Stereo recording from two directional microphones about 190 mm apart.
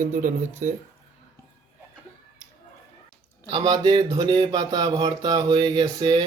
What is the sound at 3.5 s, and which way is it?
Speech, 20° right (ahead or behind).